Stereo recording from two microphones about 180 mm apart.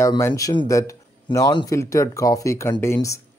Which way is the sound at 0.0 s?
20° left (ahead or behind).